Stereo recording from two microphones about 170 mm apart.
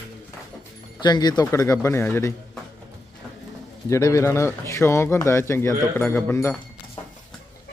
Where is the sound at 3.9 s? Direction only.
15° left (ahead or behind).